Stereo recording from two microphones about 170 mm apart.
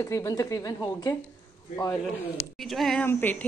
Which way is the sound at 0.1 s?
20° left (ahead or behind).